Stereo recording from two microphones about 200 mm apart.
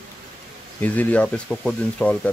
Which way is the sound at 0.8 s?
10° left (ahead or behind).